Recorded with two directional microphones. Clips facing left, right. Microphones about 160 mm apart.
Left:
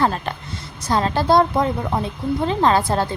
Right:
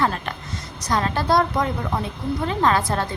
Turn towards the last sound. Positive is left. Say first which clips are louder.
# left 3 dB
turn(degrees=30)  # may be behind; listen again after turning